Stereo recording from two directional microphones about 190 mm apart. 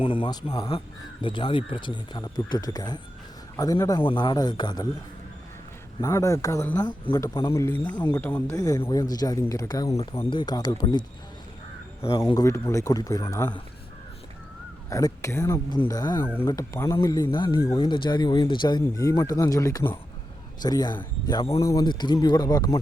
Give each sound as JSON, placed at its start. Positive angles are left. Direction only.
{"t": 0.0, "sound": "speech", "side_deg": 25}
{"t": 6.0, "sound": "speech", "side_deg": 15}
{"t": 12.3, "sound": "speech", "side_deg": 15}
{"t": 14.8, "sound": "speech", "side_deg": 15}